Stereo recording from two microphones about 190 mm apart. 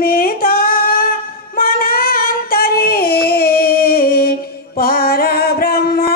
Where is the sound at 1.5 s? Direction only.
50° left (ahead or behind).